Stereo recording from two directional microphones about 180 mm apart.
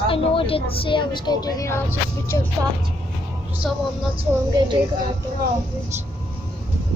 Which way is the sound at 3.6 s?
5° left (ahead or behind).